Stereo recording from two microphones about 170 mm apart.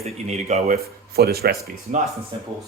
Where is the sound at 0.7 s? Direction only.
70° right (ahead or behind).